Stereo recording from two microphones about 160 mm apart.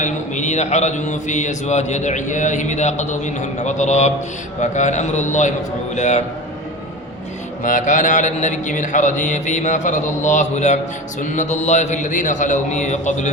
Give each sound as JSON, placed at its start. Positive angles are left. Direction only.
{"t": 0.0, "sound": "speech", "side_deg": 50}
{"t": 7.6, "sound": "speech", "side_deg": 55}